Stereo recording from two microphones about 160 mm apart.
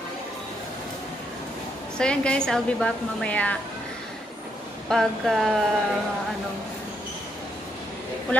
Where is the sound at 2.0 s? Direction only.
5° left (ahead or behind).